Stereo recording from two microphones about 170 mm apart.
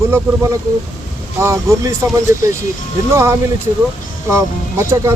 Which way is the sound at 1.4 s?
15° right (ahead or behind).